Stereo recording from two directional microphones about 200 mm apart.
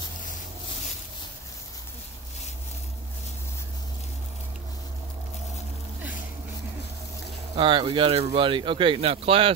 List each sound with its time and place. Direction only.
7.5 s speech: 25° right (ahead or behind)